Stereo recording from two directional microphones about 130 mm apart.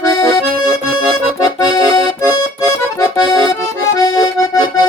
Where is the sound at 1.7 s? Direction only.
30° left (ahead or behind).